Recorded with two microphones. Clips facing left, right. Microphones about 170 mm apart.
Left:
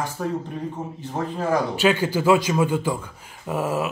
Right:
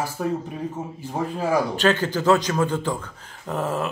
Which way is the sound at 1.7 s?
10° left (ahead or behind).